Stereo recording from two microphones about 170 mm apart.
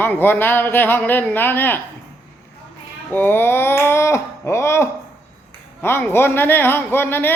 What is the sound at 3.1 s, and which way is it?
A man's voice, 10° left (ahead or behind).